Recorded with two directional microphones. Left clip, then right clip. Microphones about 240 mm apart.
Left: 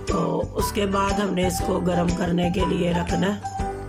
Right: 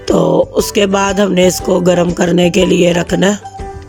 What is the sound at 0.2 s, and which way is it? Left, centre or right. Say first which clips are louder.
Music: right 13 dB; right.